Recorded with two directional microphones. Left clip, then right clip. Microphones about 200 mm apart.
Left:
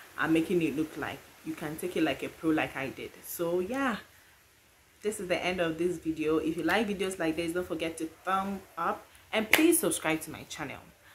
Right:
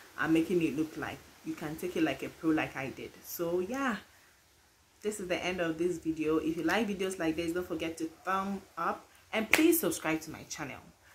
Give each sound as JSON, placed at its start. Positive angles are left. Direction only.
{"t": 0.2, "sound": "speech", "side_deg": 5}
{"t": 5.0, "sound": "speech", "side_deg": 5}